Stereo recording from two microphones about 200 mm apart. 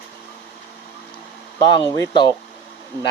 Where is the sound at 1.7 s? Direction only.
25° left (ahead or behind).